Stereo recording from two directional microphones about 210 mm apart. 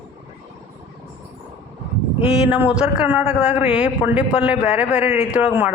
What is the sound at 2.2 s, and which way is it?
A man's voice, 10° right (ahead or behind).